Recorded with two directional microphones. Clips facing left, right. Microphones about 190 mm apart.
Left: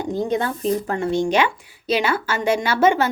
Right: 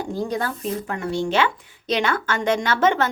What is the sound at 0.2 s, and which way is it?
A woman's voice, 25° left (ahead or behind).